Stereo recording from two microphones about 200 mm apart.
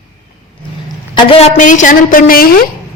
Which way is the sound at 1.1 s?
25° left (ahead or behind).